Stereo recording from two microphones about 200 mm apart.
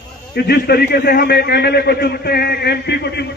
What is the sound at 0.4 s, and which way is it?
A man's voice, 55° left (ahead or behind).